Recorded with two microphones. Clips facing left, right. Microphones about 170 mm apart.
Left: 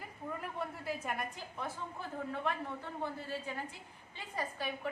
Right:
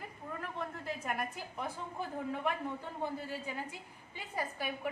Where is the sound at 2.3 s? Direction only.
15° right (ahead or behind).